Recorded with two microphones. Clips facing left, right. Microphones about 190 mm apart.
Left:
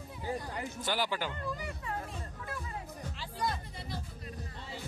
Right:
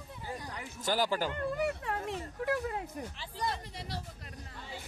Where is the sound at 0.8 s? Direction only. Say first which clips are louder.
Right 4 dB; 45° right (ahead or behind).